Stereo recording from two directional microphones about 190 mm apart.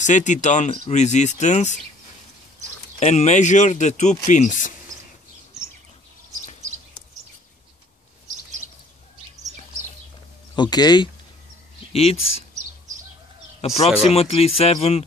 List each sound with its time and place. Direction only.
0.0 s speech: 40° left (ahead or behind)
3.0 s speech: 35° left (ahead or behind)
10.5 s speech: 20° left (ahead or behind)
13.6 s speech: 30° left (ahead or behind)